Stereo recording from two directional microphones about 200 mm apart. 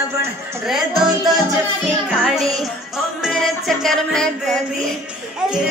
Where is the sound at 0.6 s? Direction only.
Centre (ahead or behind).